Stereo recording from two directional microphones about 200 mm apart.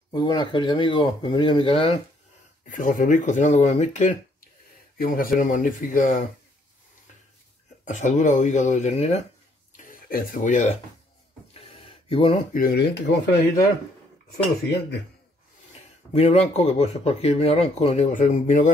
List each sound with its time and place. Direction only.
0.1 s speech: 20° left (ahead or behind)
2.7 s speech: 40° left (ahead or behind)
4.9 s a man's voice: 45° left (ahead or behind)
7.8 s speech: 40° left (ahead or behind)
9.7 s a sound: 45° left (ahead or behind); by 12.4 s 30° left (ahead or behind)
12.5 s speech: 50° left (ahead or behind)
16.1 s speech: 30° left (ahead or behind)